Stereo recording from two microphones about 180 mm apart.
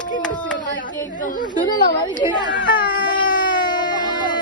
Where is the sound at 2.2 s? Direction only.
25° left (ahead or behind).